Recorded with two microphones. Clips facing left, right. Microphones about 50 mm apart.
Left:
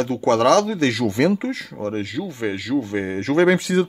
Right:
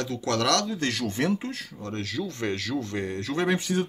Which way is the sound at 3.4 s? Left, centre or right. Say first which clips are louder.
Left 6 dB; left.